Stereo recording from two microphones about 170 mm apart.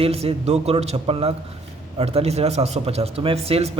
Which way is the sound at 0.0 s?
35° right (ahead or behind).